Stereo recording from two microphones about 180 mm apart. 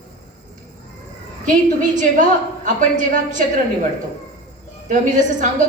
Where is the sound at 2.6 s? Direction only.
45° right (ahead or behind).